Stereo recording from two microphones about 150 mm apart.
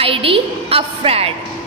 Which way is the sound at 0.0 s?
40° right (ahead or behind).